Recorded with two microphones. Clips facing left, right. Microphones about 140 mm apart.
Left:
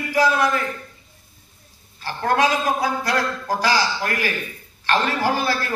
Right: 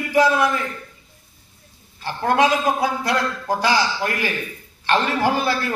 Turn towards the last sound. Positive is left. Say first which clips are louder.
# right 1 dB
turn(degrees=-25)  # may be behind; listen again after turning